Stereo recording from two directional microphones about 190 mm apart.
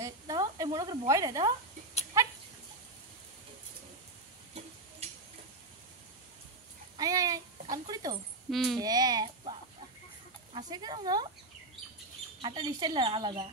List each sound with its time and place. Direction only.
0.0 s snake: 20° right (ahead or behind)
7.0 s speech: 20° right (ahead or behind)
8.5 s speech: centre (ahead or behind)
8.7 s speech: 20° right (ahead or behind)
10.5 s speech: 20° right (ahead or behind)
12.4 s speech: 25° right (ahead or behind)